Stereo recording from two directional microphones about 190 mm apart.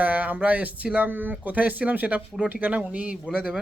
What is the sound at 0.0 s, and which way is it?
Speech, 10° right (ahead or behind).